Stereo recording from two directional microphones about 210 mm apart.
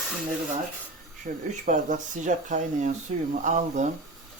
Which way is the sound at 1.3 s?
35° right (ahead or behind).